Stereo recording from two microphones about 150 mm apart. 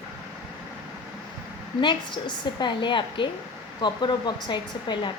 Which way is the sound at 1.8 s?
30° left (ahead or behind).